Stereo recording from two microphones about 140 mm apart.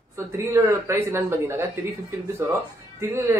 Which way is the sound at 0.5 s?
20° right (ahead or behind).